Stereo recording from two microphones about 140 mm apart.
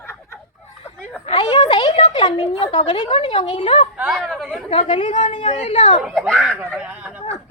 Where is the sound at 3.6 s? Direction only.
55° left (ahead or behind).